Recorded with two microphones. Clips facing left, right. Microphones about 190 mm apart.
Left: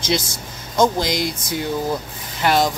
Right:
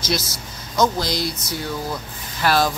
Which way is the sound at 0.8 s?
20° left (ahead or behind).